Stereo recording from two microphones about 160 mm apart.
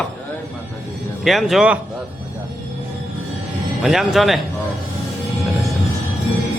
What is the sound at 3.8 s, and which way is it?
Speech, centre (ahead or behind).